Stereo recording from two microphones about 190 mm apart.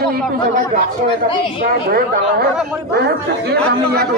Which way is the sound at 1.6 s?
55° right (ahead or behind).